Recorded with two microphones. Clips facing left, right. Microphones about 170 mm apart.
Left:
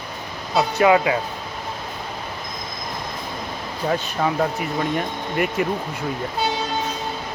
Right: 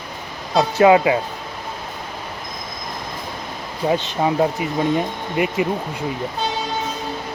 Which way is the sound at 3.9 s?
20° right (ahead or behind).